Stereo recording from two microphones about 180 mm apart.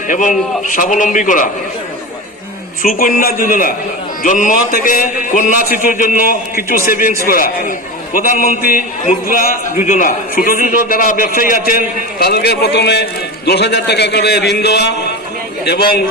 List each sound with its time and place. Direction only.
0.1 s a man's voice: 45° left (ahead or behind)
2.8 s a man's voice: 50° left (ahead or behind)
12.2 s a man's voice: 65° left (ahead or behind)